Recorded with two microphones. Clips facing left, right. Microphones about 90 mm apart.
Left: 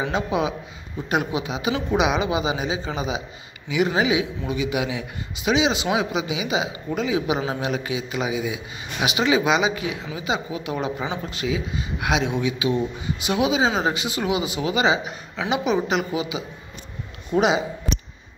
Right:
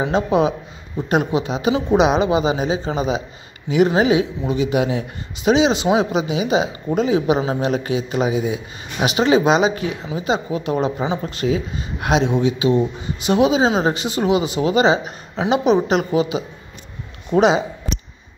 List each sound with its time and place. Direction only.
0.0 s a man's voice: 35° right (ahead or behind)